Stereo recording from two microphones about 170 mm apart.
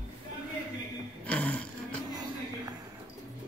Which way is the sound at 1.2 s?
10° left (ahead or behind).